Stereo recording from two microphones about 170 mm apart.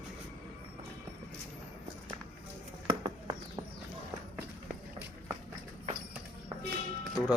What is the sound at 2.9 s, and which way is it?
Mouse, 25° right (ahead or behind).